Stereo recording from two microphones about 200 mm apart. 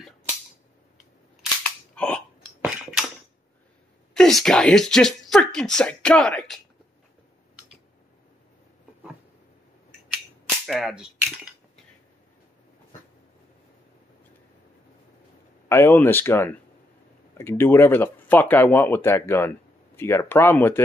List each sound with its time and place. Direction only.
1.6 s cap gun: 5° left (ahead or behind)
2.6 s a sound: 5° right (ahead or behind)
4.1 s speech: centre (ahead or behind)
10.7 s speech: centre (ahead or behind)
15.7 s speech: 10° left (ahead or behind)